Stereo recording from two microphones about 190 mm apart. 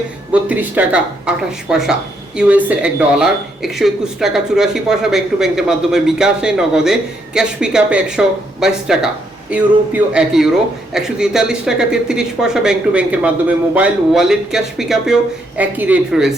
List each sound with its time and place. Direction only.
0.3 s speech: 10° right (ahead or behind)